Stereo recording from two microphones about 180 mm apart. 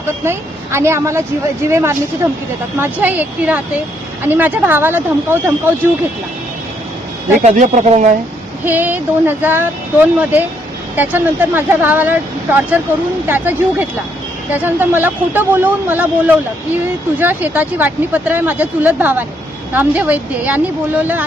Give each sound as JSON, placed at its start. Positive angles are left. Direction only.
{"t": 0.3, "sound": "speech", "side_deg": -15}
{"t": 7.4, "sound": "speech", "side_deg": -45}
{"t": 8.6, "sound": "speech", "side_deg": -10}